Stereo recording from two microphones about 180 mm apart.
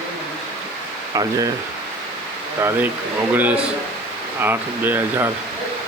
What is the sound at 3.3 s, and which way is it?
Speech, 10° right (ahead or behind).